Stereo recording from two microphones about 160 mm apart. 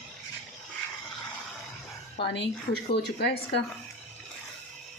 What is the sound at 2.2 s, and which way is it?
Speech, 90° left.